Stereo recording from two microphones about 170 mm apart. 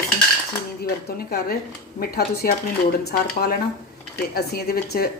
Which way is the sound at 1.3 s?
65° left (ahead or behind).